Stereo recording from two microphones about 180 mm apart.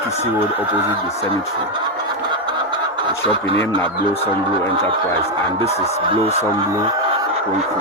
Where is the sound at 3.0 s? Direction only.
30° right (ahead or behind).